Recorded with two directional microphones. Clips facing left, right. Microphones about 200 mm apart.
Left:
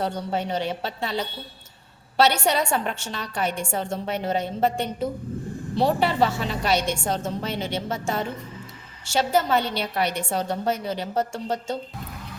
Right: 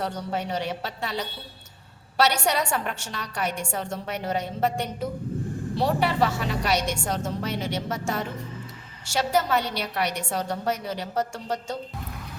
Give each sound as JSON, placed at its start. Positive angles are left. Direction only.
{"t": 0.0, "sound": "a woman's voice", "side_deg": 25}